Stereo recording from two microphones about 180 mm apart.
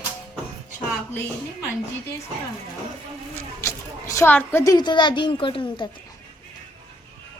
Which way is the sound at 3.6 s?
15° left (ahead or behind).